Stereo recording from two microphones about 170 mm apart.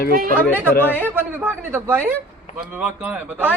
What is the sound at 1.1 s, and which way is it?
A man's voice, 10° right (ahead or behind).